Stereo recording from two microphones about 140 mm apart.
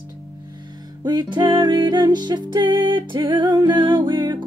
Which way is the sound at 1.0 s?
30° right (ahead or behind).